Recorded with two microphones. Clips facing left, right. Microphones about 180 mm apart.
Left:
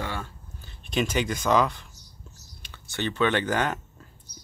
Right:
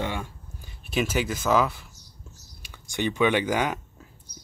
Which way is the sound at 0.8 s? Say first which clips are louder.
Even; 5° right (ahead or behind).